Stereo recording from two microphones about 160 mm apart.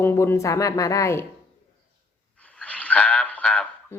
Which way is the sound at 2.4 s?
10° left (ahead or behind).